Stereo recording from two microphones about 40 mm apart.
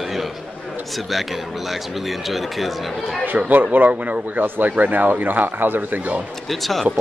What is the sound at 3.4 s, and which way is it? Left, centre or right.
Speech, right.